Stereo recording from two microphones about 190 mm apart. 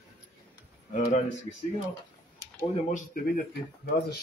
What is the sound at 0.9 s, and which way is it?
Speech, 40° left (ahead or behind).